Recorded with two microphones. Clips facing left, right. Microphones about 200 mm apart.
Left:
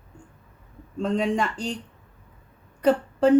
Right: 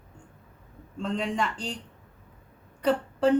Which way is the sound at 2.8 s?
45° left (ahead or behind).